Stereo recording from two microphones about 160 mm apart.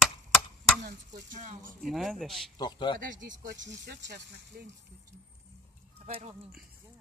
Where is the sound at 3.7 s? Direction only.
90° right.